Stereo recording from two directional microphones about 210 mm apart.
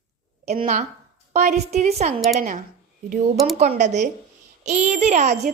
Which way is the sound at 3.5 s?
30° right (ahead or behind).